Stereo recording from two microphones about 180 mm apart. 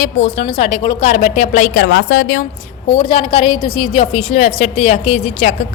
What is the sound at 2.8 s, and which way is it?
A woman's voice, 30° left (ahead or behind).